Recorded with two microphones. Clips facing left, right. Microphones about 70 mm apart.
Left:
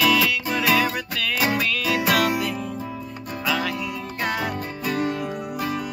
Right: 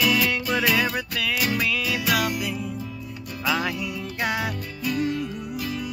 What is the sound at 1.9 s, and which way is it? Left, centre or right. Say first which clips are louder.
Music: left 3 dB; left.